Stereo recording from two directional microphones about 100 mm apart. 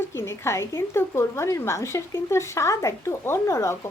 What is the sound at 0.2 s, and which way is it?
A woman's voice, 30° left (ahead or behind).